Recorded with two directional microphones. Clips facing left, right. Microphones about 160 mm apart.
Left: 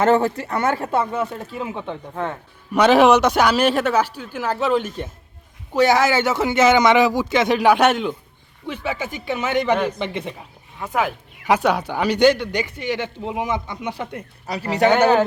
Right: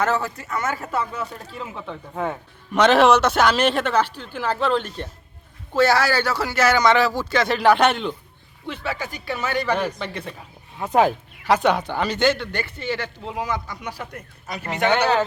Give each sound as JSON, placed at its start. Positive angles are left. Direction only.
{"t": 0.4, "sound": "speech", "side_deg": 60}
{"t": 0.7, "sound": "speech", "side_deg": 30}
{"t": 1.2, "sound": "speech", "side_deg": 15}
{"t": 2.7, "sound": "speech", "side_deg": 10}
{"t": 10.8, "sound": "speech", "side_deg": -20}
{"t": 11.4, "sound": "speech", "side_deg": 10}